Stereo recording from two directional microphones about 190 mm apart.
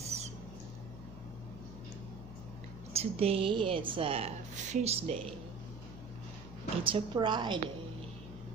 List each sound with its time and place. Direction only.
2.9 s a woman's voice: 30° right (ahead or behind)
6.8 s a woman's voice: 25° right (ahead or behind)